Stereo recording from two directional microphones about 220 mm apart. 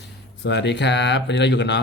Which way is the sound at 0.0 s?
50° left (ahead or behind).